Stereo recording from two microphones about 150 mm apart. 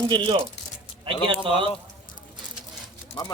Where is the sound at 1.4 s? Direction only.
35° right (ahead or behind).